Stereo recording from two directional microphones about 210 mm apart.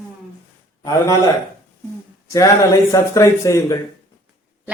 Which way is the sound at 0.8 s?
15° left (ahead or behind).